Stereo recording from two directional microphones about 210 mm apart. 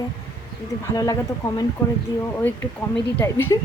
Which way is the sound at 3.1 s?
10° left (ahead or behind).